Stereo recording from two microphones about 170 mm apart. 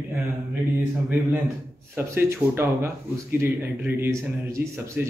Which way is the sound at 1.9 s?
15° right (ahead or behind).